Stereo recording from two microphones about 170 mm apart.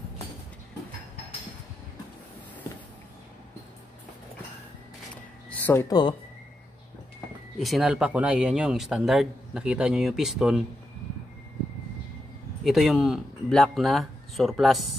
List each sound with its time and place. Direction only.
5.1 s a sound: 10° left (ahead or behind)
7.5 s speech: centre (ahead or behind)
12.6 s speech: centre (ahead or behind)